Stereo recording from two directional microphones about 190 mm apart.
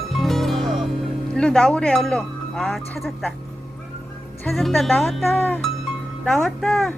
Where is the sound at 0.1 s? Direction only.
Centre (ahead or behind).